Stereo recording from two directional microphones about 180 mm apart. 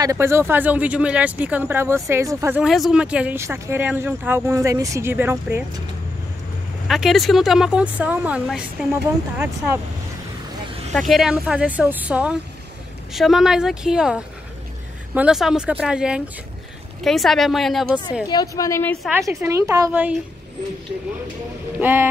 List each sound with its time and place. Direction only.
0.0 s speech: 15° right (ahead or behind)
2.6 s speech: centre (ahead or behind)
6.9 s speech: centre (ahead or behind)
10.9 s speech: centre (ahead or behind)
18.2 s a woman's voice: 20° left (ahead or behind)
19.2 s speech: 15° right (ahead or behind)
21.7 s speech: 10° right (ahead or behind)